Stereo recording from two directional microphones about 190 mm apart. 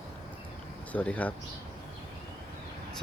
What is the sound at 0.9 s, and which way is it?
Speech, 10° left (ahead or behind).